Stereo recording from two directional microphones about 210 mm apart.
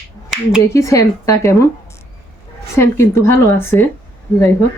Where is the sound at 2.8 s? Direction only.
15° left (ahead or behind).